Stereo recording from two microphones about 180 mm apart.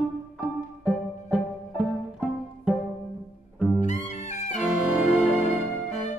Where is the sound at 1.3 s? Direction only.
5° right (ahead or behind).